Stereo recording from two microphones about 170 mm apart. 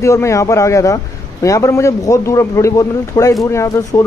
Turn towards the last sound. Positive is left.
turn(degrees=20)  # may be behind; listen again after turning